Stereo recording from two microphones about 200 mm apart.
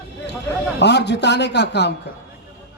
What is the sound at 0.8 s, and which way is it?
A man's voice, 60° left (ahead or behind).